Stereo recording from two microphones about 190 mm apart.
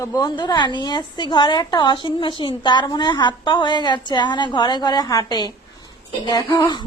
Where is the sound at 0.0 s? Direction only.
20° left (ahead or behind).